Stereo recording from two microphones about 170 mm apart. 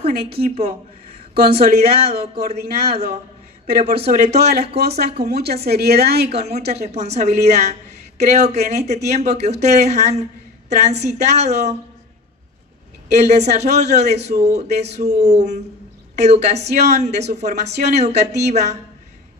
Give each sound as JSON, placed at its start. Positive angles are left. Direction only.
{"t": 0.1, "sound": "speech", "side_deg": -65}
{"t": 1.6, "sound": "speech", "side_deg": -65}
{"t": 2.0, "sound": "a woman's voice", "side_deg": -35}
{"t": 2.5, "sound": "speech", "side_deg": -65}
{"t": 2.9, "sound": "a woman's voice", "side_deg": -35}
{"t": 4.4, "sound": "a woman's voice", "side_deg": -70}
{"t": 6.4, "sound": "a woman's voice", "side_deg": -40}
{"t": 13.1, "sound": "a woman's voice", "side_deg": -40}